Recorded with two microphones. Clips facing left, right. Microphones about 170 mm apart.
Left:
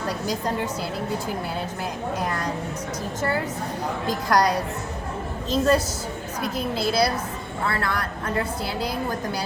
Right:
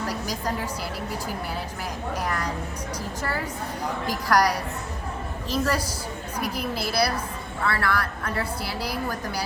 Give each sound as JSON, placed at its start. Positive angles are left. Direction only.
{"t": 0.1, "sound": "a woman's voice", "side_deg": 25}
{"t": 2.1, "sound": "a woman's voice", "side_deg": 25}
{"t": 4.0, "sound": "a woman's voice", "side_deg": 20}